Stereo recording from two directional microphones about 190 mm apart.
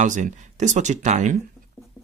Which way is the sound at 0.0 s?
40° right (ahead or behind).